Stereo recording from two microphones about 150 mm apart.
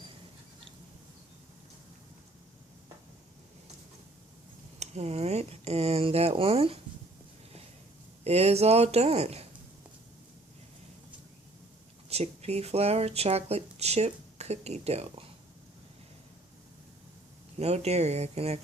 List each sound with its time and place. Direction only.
4.8 s speech: 45° right (ahead or behind)
8.2 s speech: 45° right (ahead or behind)
12.0 s speech: 45° right (ahead or behind)
17.6 s speech: 45° right (ahead or behind)